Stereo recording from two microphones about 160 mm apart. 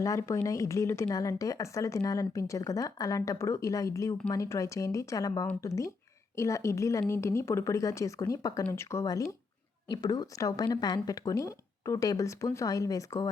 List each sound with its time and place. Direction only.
0.0 s speech: 20° left (ahead or behind)